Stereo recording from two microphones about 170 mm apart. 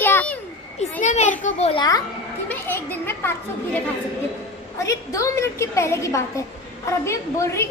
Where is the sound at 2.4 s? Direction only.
10° left (ahead or behind).